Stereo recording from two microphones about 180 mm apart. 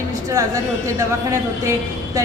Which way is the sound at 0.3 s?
20° right (ahead or behind).